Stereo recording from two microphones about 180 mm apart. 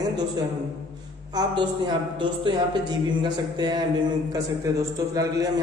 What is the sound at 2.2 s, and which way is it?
Speech, 25° right (ahead or behind).